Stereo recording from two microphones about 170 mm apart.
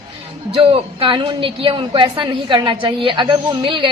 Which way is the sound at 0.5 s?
35° right (ahead or behind).